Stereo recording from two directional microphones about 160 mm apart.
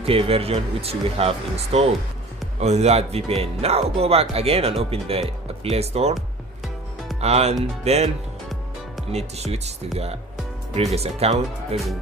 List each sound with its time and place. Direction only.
0.0 s speech: 35° right (ahead or behind)
7.2 s speech: 40° right (ahead or behind)
9.1 s speech: 40° right (ahead or behind)
10.9 s speech: 40° right (ahead or behind)